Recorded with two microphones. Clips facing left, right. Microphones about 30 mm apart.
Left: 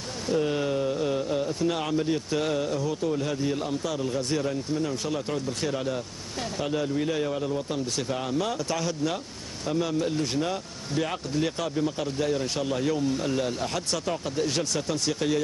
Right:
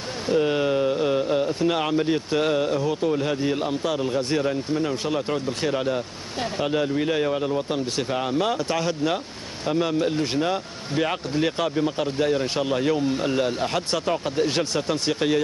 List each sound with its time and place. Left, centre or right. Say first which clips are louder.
0.3 s speech: right 5 dB; right